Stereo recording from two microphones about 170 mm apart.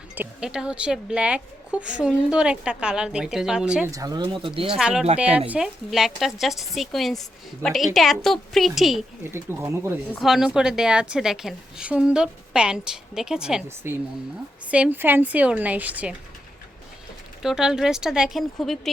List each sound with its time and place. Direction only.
0.2 s speech: 5° right (ahead or behind)
3.9 s speech: 25° right (ahead or behind)
4.8 s speech: 5° right (ahead or behind)
9.3 s a woman's voice: 15° right (ahead or behind)
10.1 s a woman's voice: centre (ahead or behind)
17.4 s speech: 5° right (ahead or behind)